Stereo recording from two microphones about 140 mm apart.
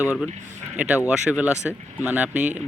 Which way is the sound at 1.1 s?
10° right (ahead or behind).